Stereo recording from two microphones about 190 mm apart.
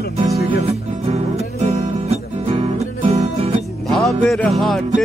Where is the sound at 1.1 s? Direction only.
35° right (ahead or behind).